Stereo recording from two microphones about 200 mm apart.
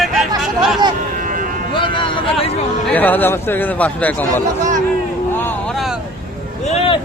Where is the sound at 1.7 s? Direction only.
25° left (ahead or behind).